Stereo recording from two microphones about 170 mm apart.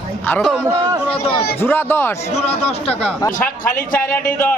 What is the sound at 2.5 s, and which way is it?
Speech, 35° left (ahead or behind).